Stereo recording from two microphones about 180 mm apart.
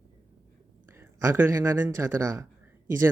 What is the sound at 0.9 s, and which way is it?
Speech, 15° right (ahead or behind).